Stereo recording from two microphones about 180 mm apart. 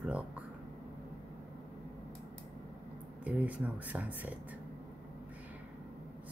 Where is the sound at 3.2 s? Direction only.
10° right (ahead or behind).